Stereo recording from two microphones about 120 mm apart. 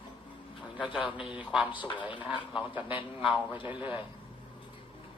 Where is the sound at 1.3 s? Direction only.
10° right (ahead or behind).